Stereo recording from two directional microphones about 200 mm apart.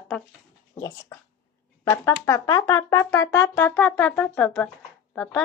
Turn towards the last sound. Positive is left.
turn(degrees=5)  # may be behind; listen again after turning